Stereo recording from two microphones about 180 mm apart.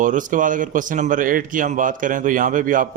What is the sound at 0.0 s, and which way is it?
Speech, 45° right (ahead or behind).